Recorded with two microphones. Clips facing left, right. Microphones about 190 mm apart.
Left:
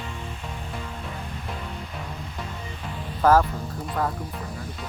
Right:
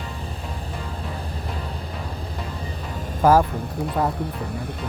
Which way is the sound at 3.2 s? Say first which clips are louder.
Right 2 dB; 10° right (ahead or behind).